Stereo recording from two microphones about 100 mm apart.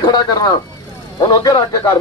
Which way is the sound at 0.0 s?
45° left (ahead or behind).